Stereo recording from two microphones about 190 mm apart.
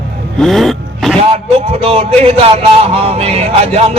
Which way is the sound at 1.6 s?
30° right (ahead or behind).